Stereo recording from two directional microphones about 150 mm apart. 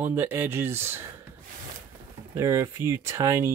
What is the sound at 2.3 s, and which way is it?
Speech, 20° right (ahead or behind).